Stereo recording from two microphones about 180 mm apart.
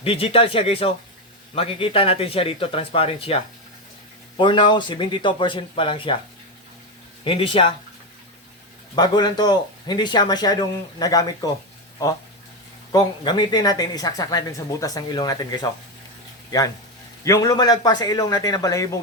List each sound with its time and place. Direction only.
0.0 s speech: 30° left (ahead or behind)
7.3 s speech: 30° left (ahead or behind)
9.0 s speech: 25° left (ahead or behind)
12.9 s speech: 25° left (ahead or behind)
16.5 s speech: 20° left (ahead or behind)